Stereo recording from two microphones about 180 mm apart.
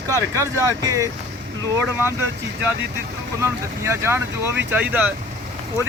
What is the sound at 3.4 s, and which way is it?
Speech, 15° right (ahead or behind).